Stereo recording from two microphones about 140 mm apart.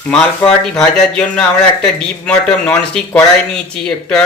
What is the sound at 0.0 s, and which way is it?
Speech, 5° left (ahead or behind).